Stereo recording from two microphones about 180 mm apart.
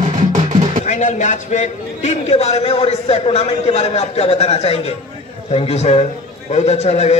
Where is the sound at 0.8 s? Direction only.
45° left (ahead or behind).